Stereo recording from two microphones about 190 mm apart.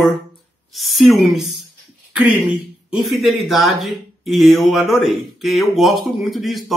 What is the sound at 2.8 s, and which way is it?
Speech, centre (ahead or behind).